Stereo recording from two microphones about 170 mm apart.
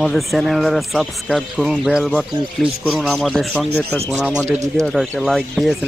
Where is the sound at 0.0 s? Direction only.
Centre (ahead or behind).